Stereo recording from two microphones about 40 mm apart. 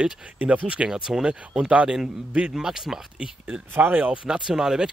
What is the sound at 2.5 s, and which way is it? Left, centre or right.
Speech, centre.